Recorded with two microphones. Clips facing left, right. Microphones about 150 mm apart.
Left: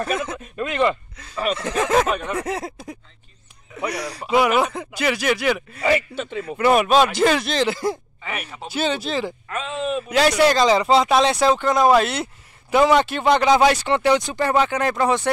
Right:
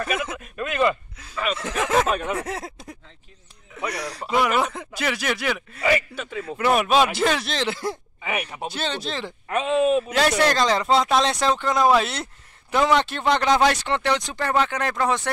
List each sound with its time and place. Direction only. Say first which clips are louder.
0.1 s speech: left 2 dB; 5° right (ahead or behind)
0.4 s a man's voice: left 2 dB; 25° left (ahead or behind)
0.8 s speech: left 1 dB; 5° right (ahead or behind)
5.9 s a man's voice: left 2 dB; 25° left (ahead or behind)
6.4 s speech: left 4 dB; 5° left (ahead or behind)
8.3 s speech: right 3 dB; 15° right (ahead or behind)
8.7 s speech: left 7 dB; 5° left (ahead or behind)
9.5 s speech: right 7 dB; 20° right (ahead or behind)
9.9 s speech: left 2 dB; centre (ahead or behind)